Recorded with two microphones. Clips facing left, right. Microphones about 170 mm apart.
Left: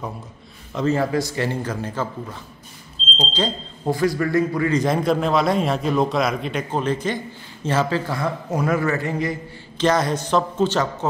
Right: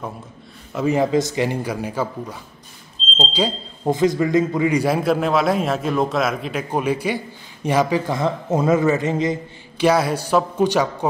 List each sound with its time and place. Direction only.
0.7 s a man's voice: 15° right (ahead or behind)
9.8 s speech: 10° right (ahead or behind)